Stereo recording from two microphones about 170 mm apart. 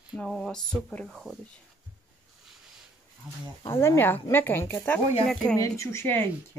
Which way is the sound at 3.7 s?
15° left (ahead or behind).